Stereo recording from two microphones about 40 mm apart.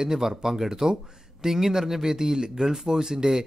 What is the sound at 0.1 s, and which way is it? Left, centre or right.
Speech, centre.